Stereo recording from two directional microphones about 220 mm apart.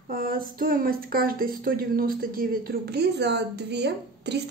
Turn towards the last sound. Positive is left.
turn(degrees=-50)  # may be behind; listen again after turning